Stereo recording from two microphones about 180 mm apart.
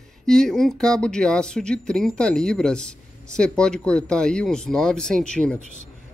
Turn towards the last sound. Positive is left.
turn(degrees=5)  # may be behind; listen again after turning